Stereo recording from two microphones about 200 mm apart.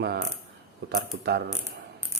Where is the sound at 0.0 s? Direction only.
55° right (ahead or behind).